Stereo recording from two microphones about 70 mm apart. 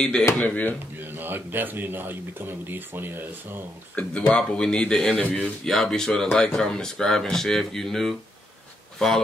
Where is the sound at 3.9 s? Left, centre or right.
Centre.